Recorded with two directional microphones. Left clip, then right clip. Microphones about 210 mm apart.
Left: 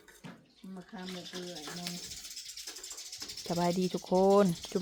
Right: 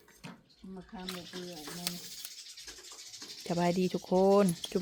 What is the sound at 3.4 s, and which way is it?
Speech, 5° right (ahead or behind).